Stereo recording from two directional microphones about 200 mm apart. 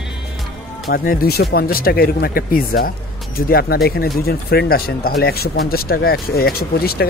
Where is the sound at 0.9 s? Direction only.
50° left (ahead or behind).